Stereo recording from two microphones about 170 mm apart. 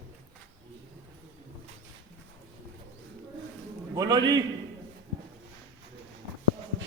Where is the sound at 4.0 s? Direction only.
25° right (ahead or behind).